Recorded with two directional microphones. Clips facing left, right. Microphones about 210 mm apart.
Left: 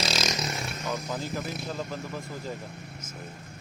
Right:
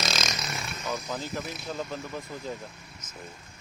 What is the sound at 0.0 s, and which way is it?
Vehicle, 30° left (ahead or behind).